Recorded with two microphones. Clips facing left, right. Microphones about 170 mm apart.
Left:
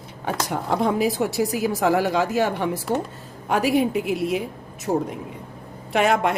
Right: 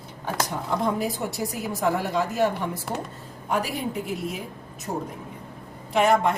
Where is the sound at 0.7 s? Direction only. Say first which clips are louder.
Left 6 dB; 80° left.